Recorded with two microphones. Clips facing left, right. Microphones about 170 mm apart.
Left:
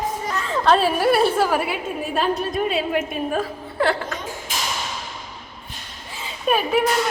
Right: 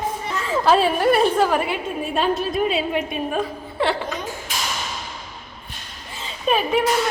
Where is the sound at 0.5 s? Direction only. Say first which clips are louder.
Right 1 dB; 5° right (ahead or behind).